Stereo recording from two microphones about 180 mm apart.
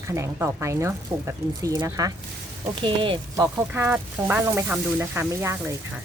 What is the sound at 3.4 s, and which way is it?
Speech, 10° right (ahead or behind).